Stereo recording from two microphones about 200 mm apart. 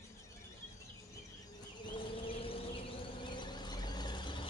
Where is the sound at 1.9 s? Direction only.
25° left (ahead or behind).